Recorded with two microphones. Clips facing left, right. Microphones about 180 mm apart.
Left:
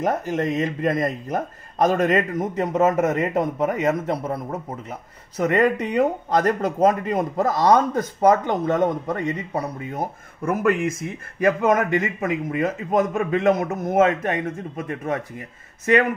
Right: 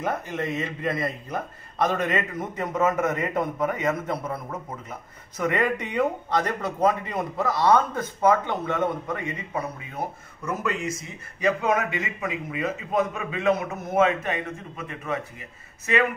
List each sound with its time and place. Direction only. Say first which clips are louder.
0.0 s speech: left 6 dB; 40° left (ahead or behind)
10.4 s speech: left 8 dB; 55° left (ahead or behind)
14.8 s speech: left 5 dB; 50° left (ahead or behind)